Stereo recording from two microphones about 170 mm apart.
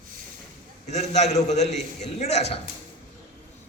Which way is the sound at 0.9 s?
40° left (ahead or behind).